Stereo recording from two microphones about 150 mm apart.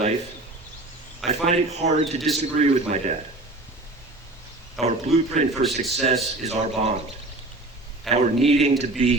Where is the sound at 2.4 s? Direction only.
50° right (ahead or behind).